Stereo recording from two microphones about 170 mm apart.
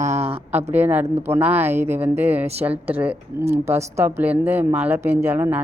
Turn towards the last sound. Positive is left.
turn(degrees=-10)  # may be behind; listen again after turning